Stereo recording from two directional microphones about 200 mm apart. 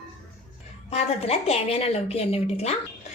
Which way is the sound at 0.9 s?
30° left (ahead or behind).